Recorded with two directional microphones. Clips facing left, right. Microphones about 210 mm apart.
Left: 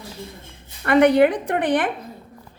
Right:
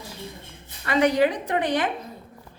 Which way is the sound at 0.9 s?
60° left (ahead or behind).